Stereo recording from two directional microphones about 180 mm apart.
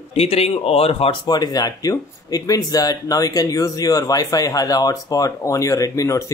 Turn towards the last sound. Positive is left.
turn(degrees=20)  # may be behind; listen again after turning